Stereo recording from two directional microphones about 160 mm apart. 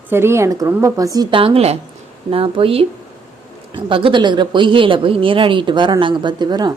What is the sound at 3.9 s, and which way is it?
A woman's voice, 30° right (ahead or behind).